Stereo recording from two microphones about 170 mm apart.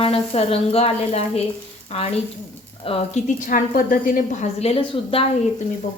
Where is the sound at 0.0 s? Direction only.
35° left (ahead or behind).